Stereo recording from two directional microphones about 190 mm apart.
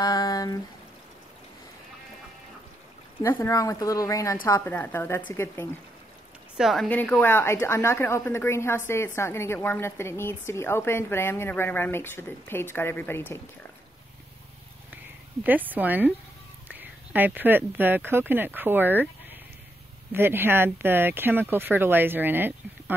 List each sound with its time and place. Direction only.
0.0 s a sound: 20° left (ahead or behind)
3.2 s a woman's voice: 15° left (ahead or behind)
6.5 s a woman's voice: centre (ahead or behind)
15.4 s speech: 10° right (ahead or behind)
20.1 s speech: 10° right (ahead or behind)